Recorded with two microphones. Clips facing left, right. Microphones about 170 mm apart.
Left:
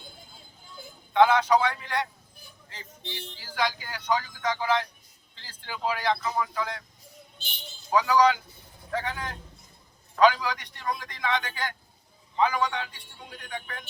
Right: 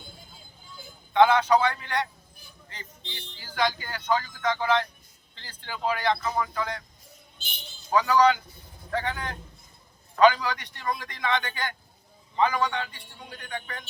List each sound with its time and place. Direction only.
1.1 s speech: centre (ahead or behind)
7.9 s speech: 5° left (ahead or behind)